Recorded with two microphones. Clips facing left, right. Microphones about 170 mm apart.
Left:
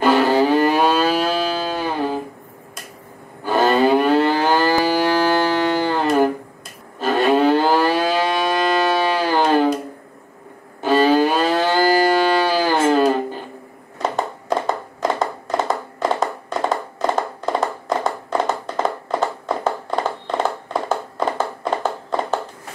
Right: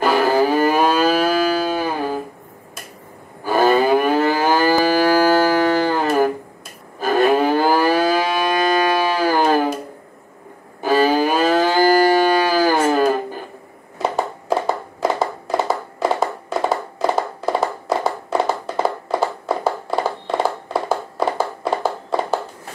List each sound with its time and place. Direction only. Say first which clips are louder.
0.0 s moo: left 1 dB; 10° right (ahead or behind)
3.4 s livestock: right 1 dB; 10° right (ahead or behind)
10.8 s music: left 1 dB; 10° right (ahead or behind)
14.0 s a sound: right 1 dB; 5° right (ahead or behind)